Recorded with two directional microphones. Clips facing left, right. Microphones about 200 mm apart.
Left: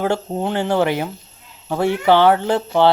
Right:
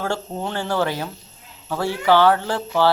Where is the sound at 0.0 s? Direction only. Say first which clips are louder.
Left 5 dB; 20° left (ahead or behind).